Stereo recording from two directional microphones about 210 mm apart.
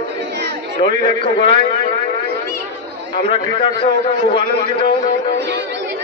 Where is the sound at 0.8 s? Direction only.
25° left (ahead or behind).